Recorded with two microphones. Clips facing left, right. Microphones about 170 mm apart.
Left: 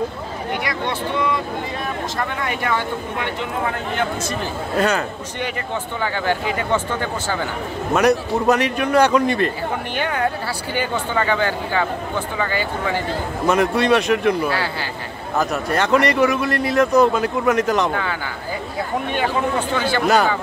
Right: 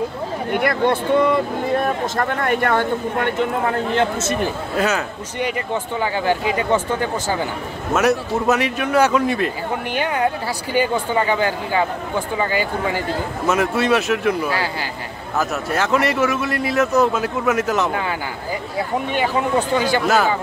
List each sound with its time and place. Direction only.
0.5 s speech: 50° right (ahead or behind)
3.9 s speech: 25° right (ahead or behind)
4.7 s speech: 5° right (ahead or behind)
7.9 s speech: 5° right (ahead or behind)